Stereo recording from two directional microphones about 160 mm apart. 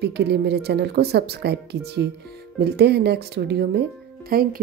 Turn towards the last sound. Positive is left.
turn(degrees=-70)  # may be behind; listen again after turning